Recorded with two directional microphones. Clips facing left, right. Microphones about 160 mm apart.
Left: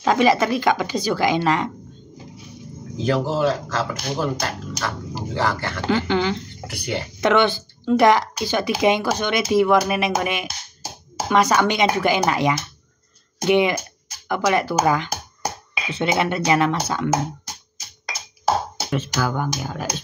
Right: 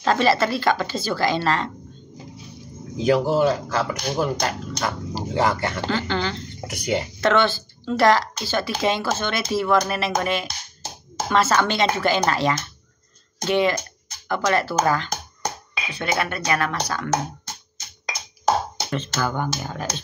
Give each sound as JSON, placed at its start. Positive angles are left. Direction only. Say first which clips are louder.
{"t": 0.0, "sound": "speech", "louder": "left 2 dB", "side_deg": 10}
{"t": 3.0, "sound": "speech", "louder": "right 2 dB", "side_deg": -15}
{"t": 5.9, "sound": "speech", "louder": "left 7 dB", "side_deg": 15}
{"t": 13.4, "sound": "music", "louder": "left 3 dB", "side_deg": 15}
{"t": 15.9, "sound": "speech", "louder": "left 4 dB", "side_deg": 20}
{"t": 17.7, "sound": "music", "louder": "right 2 dB", "side_deg": 5}